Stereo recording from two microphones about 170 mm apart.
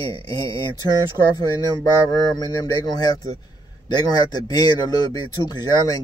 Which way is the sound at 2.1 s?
20° left (ahead or behind).